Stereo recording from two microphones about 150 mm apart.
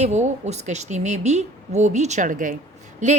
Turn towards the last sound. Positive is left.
turn(degrees=-50)  # may be behind; listen again after turning